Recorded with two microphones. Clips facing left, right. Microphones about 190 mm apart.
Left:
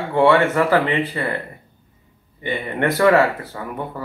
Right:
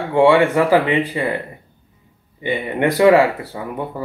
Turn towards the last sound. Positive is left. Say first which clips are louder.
# right 3 dB
turn(degrees=-15)  # may be behind; listen again after turning